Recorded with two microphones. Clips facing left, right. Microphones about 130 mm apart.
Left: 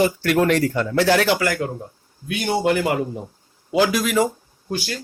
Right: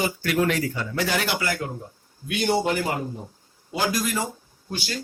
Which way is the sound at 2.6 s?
70° left (ahead or behind).